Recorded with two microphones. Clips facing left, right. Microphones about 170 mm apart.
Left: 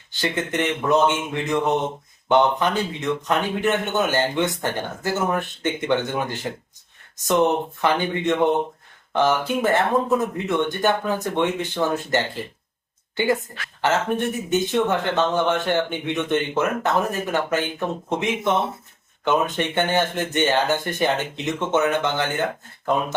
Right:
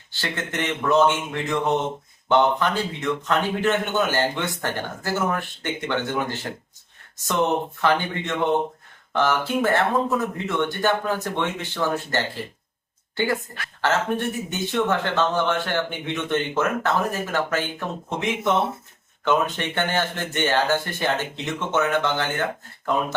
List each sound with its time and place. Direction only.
0.1 s a man's voice: 15° left (ahead or behind)
14.5 s a man's voice: 20° left (ahead or behind)
19.5 s a man's voice: 20° left (ahead or behind)